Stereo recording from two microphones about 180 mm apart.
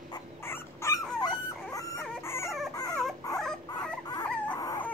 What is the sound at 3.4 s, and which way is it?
Dog, 5° left (ahead or behind).